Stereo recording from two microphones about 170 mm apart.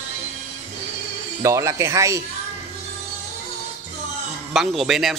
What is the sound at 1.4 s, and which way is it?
Speech, 15° right (ahead or behind).